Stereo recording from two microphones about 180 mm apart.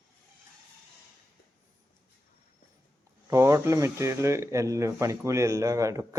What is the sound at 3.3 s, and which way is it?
Speech, 15° right (ahead or behind).